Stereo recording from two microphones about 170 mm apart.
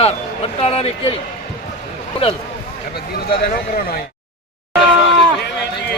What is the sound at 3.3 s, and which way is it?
Speech, 65° left (ahead or behind).